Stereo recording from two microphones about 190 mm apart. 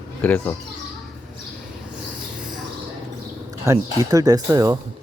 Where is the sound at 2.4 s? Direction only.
5° right (ahead or behind).